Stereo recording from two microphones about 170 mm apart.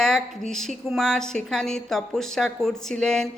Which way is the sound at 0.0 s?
5° left (ahead or behind).